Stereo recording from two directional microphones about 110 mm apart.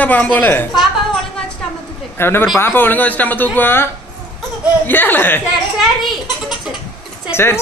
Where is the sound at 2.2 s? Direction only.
20° left (ahead or behind).